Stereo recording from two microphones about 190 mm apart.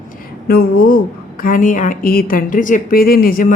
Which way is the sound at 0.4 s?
50° left (ahead or behind).